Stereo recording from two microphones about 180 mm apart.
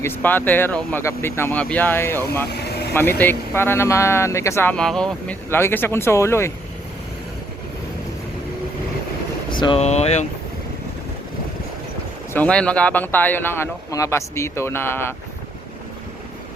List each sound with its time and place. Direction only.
0.0 s speech: 10° left (ahead or behind)
2.5 s vehicle: 65° left (ahead or behind)
2.9 s speech: 10° left (ahead or behind)
9.5 s speech: 25° left (ahead or behind)
12.3 s speech: 5° left (ahead or behind)